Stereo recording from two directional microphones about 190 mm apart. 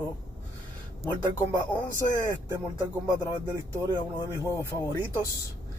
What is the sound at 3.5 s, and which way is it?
Speech, 15° right (ahead or behind).